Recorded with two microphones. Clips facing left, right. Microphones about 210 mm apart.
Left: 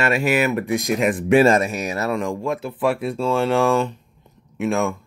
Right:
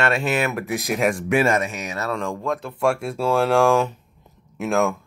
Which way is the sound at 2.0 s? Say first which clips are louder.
Even; 15° left (ahead or behind).